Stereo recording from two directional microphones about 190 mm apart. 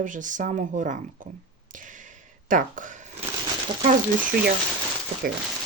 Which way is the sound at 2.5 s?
45° right (ahead or behind).